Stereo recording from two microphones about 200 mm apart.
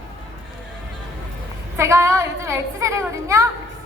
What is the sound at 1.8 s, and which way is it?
A woman's voice, 15° right (ahead or behind).